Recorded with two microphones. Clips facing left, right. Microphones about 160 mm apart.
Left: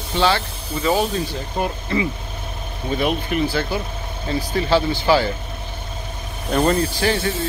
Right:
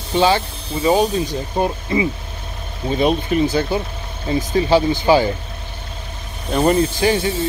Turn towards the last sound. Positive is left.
turn(degrees=-15)  # may be behind; listen again after turning